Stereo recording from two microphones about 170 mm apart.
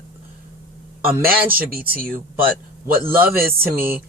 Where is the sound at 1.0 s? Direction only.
60° right (ahead or behind).